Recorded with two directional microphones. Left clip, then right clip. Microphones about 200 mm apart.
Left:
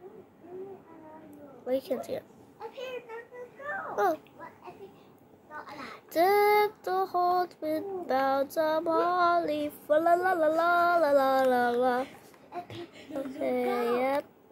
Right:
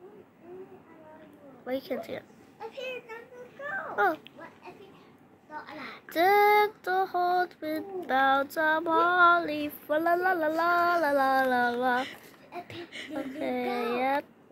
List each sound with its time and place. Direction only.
1.7 s child singing: 10° left (ahead or behind)
3.9 s a child's voice: 10° left (ahead or behind)
6.0 s child singing: 5° left (ahead or behind)
12.6 s a sound: 45° right (ahead or behind)
13.4 s child singing: 10° left (ahead or behind)